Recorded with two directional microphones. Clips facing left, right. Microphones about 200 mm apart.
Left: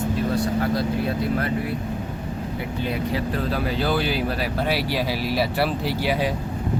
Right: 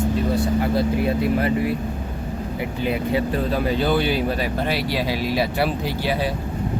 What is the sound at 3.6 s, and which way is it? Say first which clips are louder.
Speech: right 3 dB; centre (ahead or behind).